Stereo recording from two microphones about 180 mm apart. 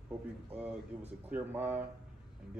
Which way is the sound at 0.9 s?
5° right (ahead or behind).